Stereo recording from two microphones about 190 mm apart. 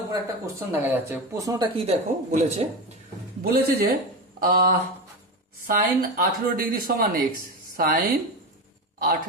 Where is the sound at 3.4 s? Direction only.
55° right (ahead or behind).